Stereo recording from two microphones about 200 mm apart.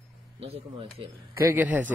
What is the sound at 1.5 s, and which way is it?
Speech, 10° right (ahead or behind).